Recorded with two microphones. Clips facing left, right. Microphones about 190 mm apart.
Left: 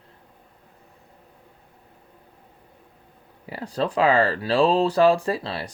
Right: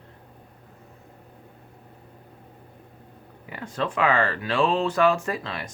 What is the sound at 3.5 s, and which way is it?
Speech, 35° left (ahead or behind).